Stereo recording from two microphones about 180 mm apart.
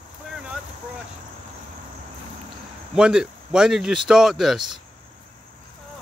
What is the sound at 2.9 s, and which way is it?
Speech, 5° right (ahead or behind).